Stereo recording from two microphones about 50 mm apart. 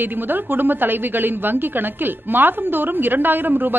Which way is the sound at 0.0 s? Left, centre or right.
Right.